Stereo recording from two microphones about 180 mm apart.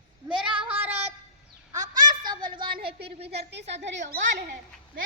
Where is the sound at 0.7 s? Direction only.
10° right (ahead or behind).